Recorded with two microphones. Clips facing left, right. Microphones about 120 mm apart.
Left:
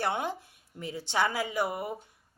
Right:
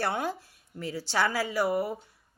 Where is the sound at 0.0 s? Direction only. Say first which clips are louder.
Right 1 dB; 20° left (ahead or behind).